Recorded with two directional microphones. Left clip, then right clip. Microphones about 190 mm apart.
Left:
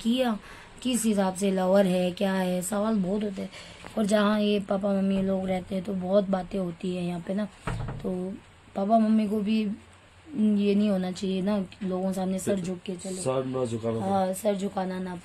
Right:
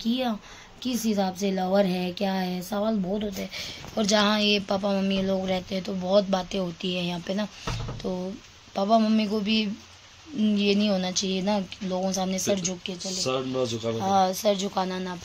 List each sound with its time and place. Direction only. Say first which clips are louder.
0.0 s a woman's voice: left 1 dB; centre (ahead or behind)
13.2 s speech: right 1 dB; 35° left (ahead or behind)
14.0 s a woman's voice: right 5 dB; 5° right (ahead or behind)